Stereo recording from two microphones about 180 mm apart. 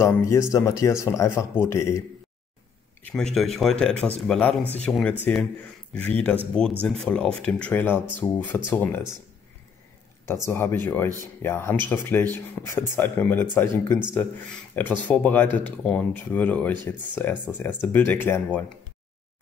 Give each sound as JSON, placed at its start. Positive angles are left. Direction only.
{"t": 0.0, "sound": "speech", "side_deg": 15}
{"t": 3.0, "sound": "speech", "side_deg": 5}
{"t": 10.2, "sound": "speech", "side_deg": 15}